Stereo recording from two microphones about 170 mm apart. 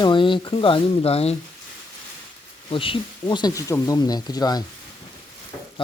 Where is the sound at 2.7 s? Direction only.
30° left (ahead or behind).